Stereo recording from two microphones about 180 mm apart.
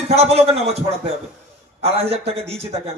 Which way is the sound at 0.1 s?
35° right (ahead or behind).